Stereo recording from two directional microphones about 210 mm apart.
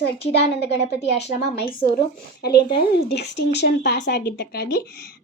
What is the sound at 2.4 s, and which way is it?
A woman's voice, 50° left (ahead or behind).